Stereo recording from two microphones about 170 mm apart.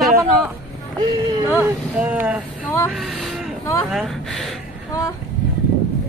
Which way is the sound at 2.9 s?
Centre (ahead or behind).